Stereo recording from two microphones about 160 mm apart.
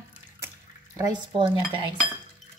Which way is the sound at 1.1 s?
35° right (ahead or behind).